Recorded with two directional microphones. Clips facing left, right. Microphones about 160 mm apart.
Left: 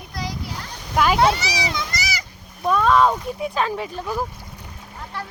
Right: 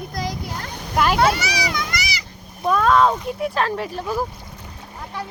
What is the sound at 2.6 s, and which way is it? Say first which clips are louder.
Speech: even; centre (ahead or behind).